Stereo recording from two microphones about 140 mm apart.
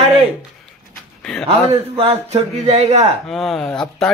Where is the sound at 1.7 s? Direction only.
45° right (ahead or behind).